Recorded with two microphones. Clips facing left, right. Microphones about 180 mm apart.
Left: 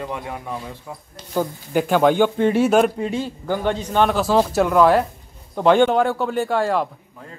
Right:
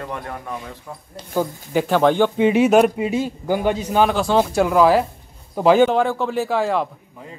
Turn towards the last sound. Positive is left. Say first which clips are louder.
# even
turn(degrees=0)  # may be behind; listen again after turning